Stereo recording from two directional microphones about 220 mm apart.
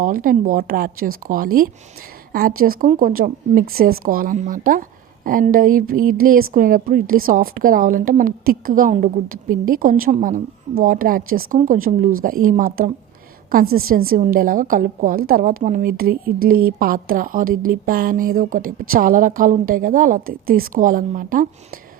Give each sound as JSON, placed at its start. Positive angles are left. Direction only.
{"t": 0.0, "sound": "a woman's voice", "side_deg": -40}